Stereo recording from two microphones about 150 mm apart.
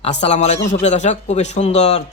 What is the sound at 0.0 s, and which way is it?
Speech, 50° left (ahead or behind).